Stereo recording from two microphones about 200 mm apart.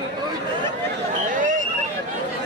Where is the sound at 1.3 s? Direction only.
40° right (ahead or behind).